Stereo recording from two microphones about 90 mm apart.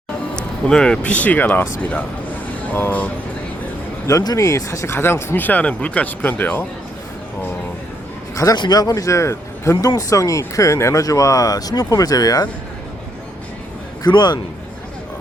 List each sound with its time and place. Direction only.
0.3 s speech: 10° left (ahead or behind)
4.2 s a man's voice: 45° left (ahead or behind)
4.4 s speech: 35° left (ahead or behind); by 6.7 s 20° left (ahead or behind)
8.5 s speech: 50° left (ahead or behind)
14.0 s a man's voice: 50° left (ahead or behind)